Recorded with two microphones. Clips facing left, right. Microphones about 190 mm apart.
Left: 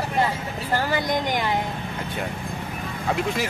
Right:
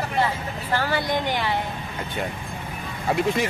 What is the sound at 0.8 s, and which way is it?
Speech, 15° left (ahead or behind).